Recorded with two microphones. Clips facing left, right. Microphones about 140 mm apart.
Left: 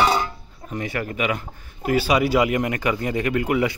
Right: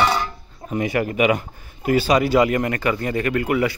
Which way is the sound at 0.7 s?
10° right (ahead or behind).